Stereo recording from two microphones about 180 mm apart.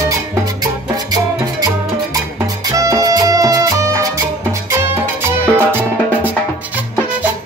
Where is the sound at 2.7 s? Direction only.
20° right (ahead or behind).